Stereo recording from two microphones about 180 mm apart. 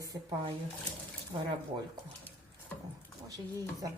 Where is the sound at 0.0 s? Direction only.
25° right (ahead or behind).